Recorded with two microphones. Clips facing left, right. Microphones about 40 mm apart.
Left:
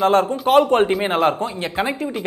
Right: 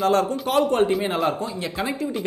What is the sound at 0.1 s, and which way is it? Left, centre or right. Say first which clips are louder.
Speech: left 5 dB; left.